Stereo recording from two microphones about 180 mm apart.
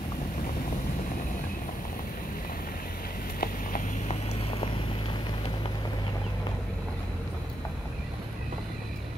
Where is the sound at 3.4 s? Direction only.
50° left (ahead or behind).